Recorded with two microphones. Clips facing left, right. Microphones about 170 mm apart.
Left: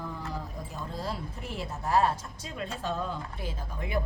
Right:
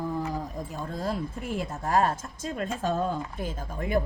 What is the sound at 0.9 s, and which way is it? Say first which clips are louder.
Speech: right 6 dB; 50° right (ahead or behind).